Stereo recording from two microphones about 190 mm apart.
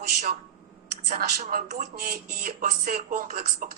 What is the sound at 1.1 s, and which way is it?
Speech, 50° right (ahead or behind).